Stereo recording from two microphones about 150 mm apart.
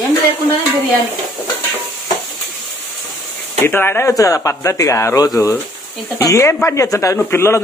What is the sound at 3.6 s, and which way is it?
Speech, 15° left (ahead or behind).